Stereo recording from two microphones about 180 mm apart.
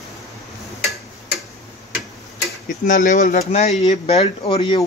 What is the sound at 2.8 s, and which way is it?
Speech, 45° left (ahead or behind).